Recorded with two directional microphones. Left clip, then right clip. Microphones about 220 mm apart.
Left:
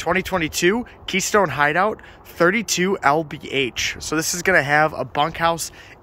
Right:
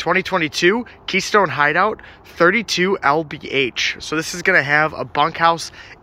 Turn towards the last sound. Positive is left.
turn(degrees=10)  # may be behind; listen again after turning